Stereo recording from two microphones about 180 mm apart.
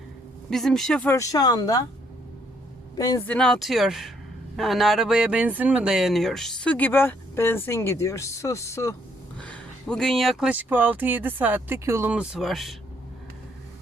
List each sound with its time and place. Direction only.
0.5 s speech: centre (ahead or behind); by 1.8 s 20° left (ahead or behind)
2.9 s speech: 20° left (ahead or behind)
3.2 s speech: 5° left (ahead or behind)
9.4 s speech: 5° left (ahead or behind)